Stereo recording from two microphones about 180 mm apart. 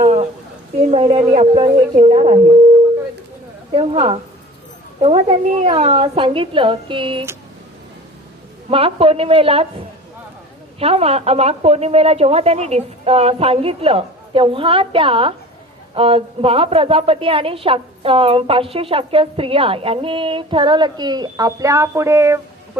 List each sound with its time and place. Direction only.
0.0 s a sound: 40° right (ahead or behind)
0.8 s a woman's voice: 35° right (ahead or behind)
3.8 s a woman's voice: 35° right (ahead or behind)
8.7 s a woman's voice: 30° right (ahead or behind)
10.8 s a woman's voice: 35° right (ahead or behind); by 22.8 s 15° right (ahead or behind)